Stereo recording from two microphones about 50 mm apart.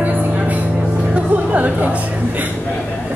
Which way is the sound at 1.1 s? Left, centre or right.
Right.